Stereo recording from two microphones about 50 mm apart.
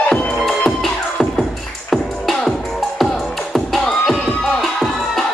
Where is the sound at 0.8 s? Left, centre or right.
Centre.